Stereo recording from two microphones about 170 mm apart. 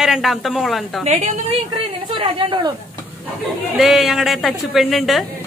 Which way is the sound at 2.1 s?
30° right (ahead or behind).